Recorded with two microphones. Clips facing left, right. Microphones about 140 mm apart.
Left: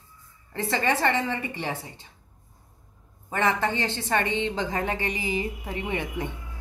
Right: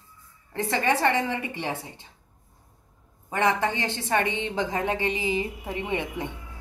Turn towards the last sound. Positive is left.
turn(degrees=-20)  # may be behind; listen again after turning